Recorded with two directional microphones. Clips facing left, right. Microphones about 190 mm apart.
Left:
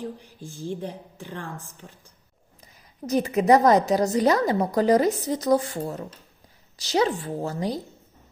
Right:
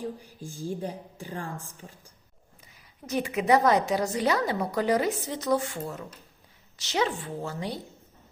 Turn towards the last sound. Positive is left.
turn(degrees=40)  # may be behind; listen again after turning